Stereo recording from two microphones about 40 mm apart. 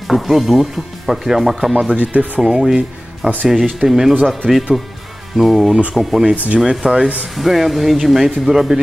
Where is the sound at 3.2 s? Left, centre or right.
Right.